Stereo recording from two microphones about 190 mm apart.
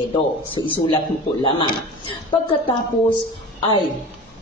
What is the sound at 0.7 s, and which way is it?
Speech, 25° left (ahead or behind).